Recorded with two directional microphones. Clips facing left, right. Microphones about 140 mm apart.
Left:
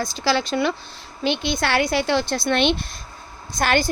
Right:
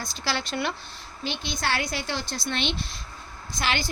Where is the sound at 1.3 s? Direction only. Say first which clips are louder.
Left 7 dB; 65° left (ahead or behind).